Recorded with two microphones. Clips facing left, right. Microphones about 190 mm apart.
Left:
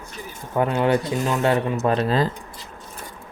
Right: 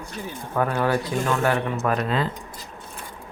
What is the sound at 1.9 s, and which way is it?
Speech, 30° left (ahead or behind).